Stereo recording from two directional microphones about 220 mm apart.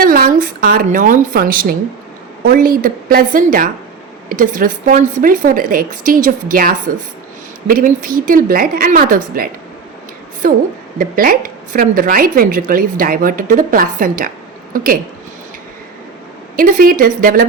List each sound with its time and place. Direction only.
0.0 s a woman's voice: 40° right (ahead or behind)
10.9 s a woman's voice: 40° right (ahead or behind)
16.6 s a woman's voice: 40° right (ahead or behind)